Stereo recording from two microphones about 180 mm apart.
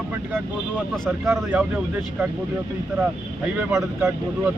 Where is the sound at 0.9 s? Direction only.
5° left (ahead or behind).